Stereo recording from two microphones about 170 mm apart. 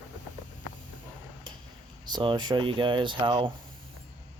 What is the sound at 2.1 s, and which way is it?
Speech, 25° right (ahead or behind).